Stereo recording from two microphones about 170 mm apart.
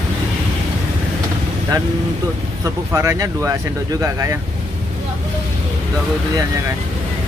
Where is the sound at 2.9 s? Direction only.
20° right (ahead or behind).